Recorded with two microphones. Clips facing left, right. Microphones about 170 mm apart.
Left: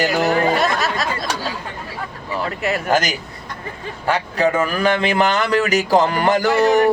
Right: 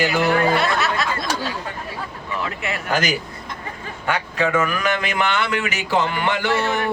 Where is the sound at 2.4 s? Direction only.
40° left (ahead or behind).